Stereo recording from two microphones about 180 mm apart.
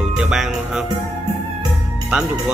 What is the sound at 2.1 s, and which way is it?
Speech, 5° right (ahead or behind).